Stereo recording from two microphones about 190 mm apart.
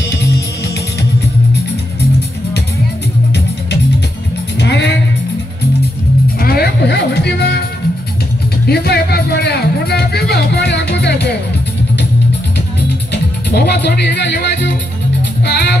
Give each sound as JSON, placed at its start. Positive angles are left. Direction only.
{"t": 4.6, "sound": "music", "side_deg": 65}
{"t": 6.4, "sound": "music", "side_deg": 55}
{"t": 8.6, "sound": "music", "side_deg": 55}
{"t": 13.1, "sound": "music", "side_deg": 60}